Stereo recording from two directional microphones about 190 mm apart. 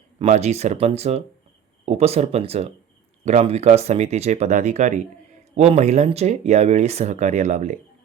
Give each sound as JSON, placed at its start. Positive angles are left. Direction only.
{"t": 0.2, "sound": "speech", "side_deg": -35}